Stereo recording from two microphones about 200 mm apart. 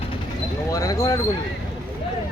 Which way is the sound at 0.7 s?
15° left (ahead or behind).